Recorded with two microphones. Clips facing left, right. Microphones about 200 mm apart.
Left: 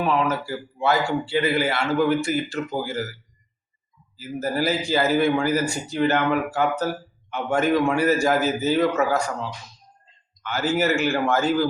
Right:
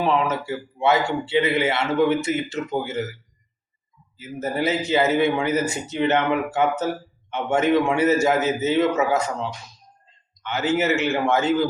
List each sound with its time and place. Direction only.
0.0 s speech: 25° right (ahead or behind)
4.4 s speech: 20° right (ahead or behind)